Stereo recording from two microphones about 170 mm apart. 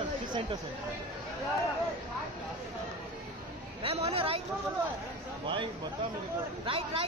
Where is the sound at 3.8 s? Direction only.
35° right (ahead or behind).